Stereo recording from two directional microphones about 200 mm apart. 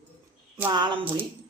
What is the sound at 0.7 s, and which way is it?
Speech, 25° right (ahead or behind).